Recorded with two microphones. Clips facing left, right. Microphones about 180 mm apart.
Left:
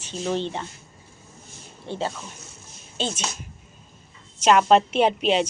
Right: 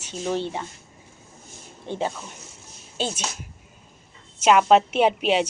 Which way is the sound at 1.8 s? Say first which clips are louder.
Right 1 dB; 15° right (ahead or behind).